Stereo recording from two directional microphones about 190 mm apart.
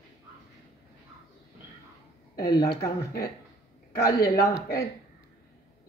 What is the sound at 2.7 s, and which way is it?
A woman's voice, 60° left (ahead or behind).